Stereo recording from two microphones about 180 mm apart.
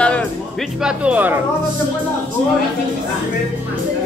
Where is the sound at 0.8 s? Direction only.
5° right (ahead or behind).